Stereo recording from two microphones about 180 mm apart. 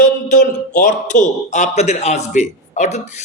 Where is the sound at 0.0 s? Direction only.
50° left (ahead or behind).